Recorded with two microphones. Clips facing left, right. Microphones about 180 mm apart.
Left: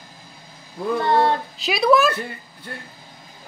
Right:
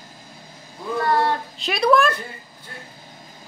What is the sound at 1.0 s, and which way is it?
Child singing, 25° left (ahead or behind).